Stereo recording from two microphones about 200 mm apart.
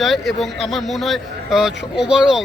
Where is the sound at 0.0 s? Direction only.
Centre (ahead or behind).